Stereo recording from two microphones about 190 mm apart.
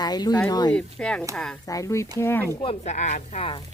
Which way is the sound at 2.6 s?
35° left (ahead or behind).